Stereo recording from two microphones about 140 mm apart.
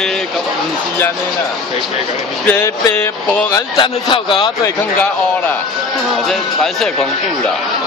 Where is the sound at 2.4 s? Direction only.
20° left (ahead or behind).